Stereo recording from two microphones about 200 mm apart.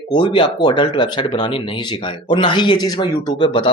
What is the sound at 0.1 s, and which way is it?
Speech, 25° left (ahead or behind).